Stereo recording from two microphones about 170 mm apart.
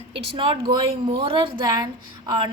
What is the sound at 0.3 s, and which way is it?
A woman's voice, 30° right (ahead or behind).